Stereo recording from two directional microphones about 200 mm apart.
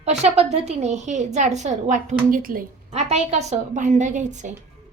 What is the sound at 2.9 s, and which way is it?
A woman's voice, 35° right (ahead or behind).